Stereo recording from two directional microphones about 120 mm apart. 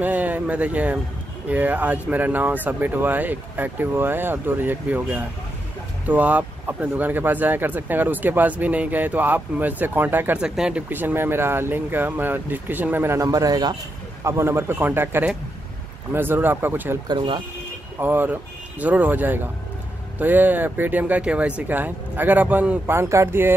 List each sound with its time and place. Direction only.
0.0 s speech: 15° right (ahead or behind); by 13.7 s 35° right (ahead or behind)
14.2 s a man's voice: 25° right (ahead or behind)
17.1 s speech: 40° right (ahead or behind)
17.9 s speech: 15° right (ahead or behind)